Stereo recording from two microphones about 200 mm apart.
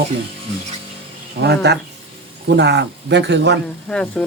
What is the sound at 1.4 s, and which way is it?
Speech, 60° right (ahead or behind).